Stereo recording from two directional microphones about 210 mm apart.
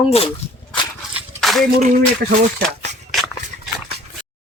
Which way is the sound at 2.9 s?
35° right (ahead or behind).